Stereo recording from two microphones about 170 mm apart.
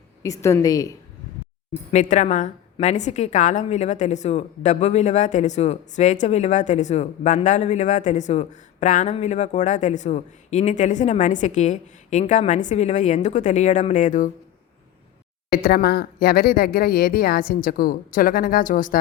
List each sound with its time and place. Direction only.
0.2 s a woman's voice: 15° left (ahead or behind)
1.9 s a woman's voice: 45° left (ahead or behind)
15.4 s speech: 65° left (ahead or behind)